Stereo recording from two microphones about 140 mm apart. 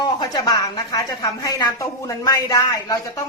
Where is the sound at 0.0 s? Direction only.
30° left (ahead or behind).